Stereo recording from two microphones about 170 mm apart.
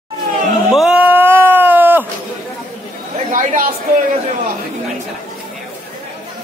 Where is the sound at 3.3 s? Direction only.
50° right (ahead or behind).